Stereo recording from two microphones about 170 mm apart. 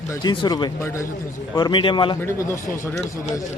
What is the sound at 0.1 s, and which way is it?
A man's voice, 25° left (ahead or behind).